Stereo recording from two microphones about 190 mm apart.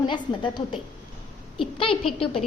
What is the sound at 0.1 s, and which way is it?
A woman's voice, 25° left (ahead or behind).